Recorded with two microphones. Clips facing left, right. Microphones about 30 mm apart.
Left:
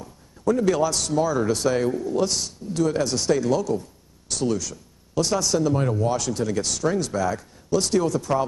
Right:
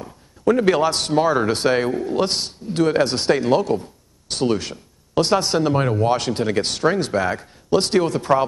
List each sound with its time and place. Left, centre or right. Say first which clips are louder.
0.0 s a man's voice: right 5 dB; right